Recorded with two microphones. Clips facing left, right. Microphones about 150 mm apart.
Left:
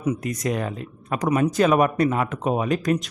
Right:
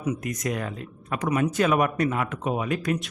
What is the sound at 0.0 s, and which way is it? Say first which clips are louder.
Speech: left 3 dB; 30° left (ahead or behind).